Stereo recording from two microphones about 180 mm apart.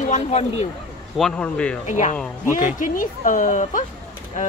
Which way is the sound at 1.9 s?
45° left (ahead or behind).